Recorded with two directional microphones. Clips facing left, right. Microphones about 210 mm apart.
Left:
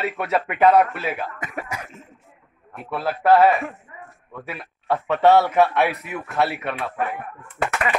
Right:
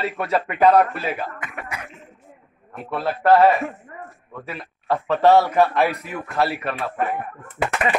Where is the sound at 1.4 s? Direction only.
40° left (ahead or behind).